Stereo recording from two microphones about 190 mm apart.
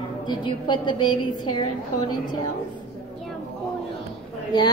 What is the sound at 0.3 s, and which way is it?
Speech, 25° left (ahead or behind).